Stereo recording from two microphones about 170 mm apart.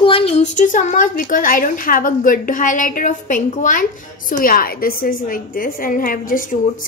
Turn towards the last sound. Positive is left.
turn(degrees=55)  # may be behind; listen again after turning